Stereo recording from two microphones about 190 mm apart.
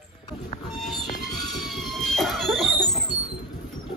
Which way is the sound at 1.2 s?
Centre (ahead or behind).